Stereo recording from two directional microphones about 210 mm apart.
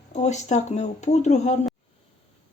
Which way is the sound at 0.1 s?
35° left (ahead or behind).